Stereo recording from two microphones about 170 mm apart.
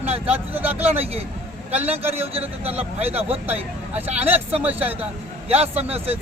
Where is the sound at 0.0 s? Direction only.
40° right (ahead or behind).